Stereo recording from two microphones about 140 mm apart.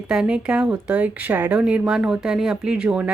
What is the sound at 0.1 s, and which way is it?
Speech, 5° right (ahead or behind).